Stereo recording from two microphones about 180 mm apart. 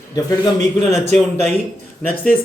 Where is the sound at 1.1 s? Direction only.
Centre (ahead or behind).